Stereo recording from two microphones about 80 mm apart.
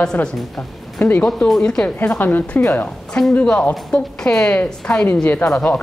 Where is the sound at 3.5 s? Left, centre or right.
Centre.